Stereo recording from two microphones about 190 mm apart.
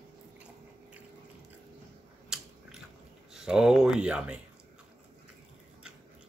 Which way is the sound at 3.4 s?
5° right (ahead or behind).